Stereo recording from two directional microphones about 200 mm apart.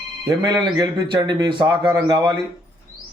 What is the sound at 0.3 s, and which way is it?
Speech, 20° right (ahead or behind).